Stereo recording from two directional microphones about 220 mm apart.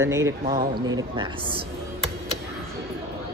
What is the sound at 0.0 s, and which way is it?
Speech, 10° right (ahead or behind).